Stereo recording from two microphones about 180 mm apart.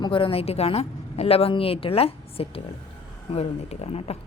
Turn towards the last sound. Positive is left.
turn(degrees=30)  # may be behind; listen again after turning